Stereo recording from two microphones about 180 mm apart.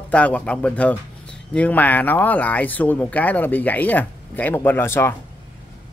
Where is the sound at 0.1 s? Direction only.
5° left (ahead or behind).